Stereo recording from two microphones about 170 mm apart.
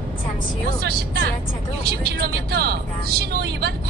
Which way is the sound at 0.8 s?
70° right (ahead or behind).